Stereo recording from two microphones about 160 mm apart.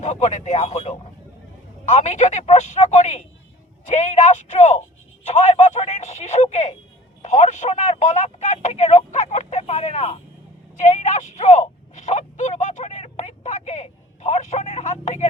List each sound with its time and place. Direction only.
0.0 s speech: 45° left (ahead or behind)